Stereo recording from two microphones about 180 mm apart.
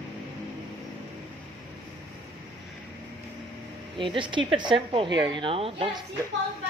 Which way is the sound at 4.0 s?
25° right (ahead or behind).